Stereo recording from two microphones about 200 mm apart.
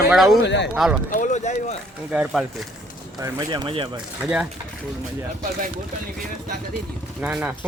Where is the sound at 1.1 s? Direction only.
40° left (ahead or behind).